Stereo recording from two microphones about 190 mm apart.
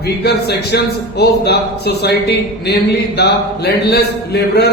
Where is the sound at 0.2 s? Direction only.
60° left (ahead or behind).